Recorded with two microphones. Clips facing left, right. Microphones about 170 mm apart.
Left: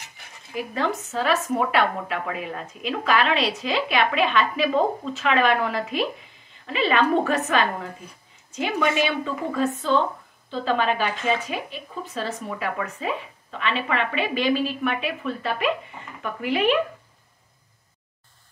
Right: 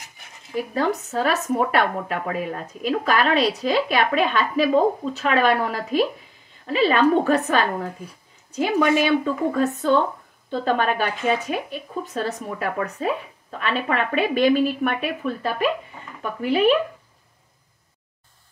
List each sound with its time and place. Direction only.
0.6 s speech: 40° right (ahead or behind)